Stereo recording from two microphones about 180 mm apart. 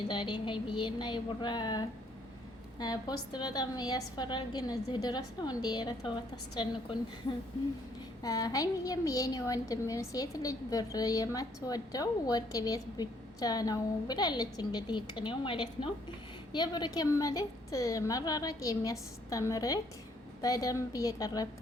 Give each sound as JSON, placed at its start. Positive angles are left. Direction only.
{"t": 0.1, "sound": "a woman's voice", "side_deg": 25}
{"t": 8.2, "sound": "a woman's voice", "side_deg": 20}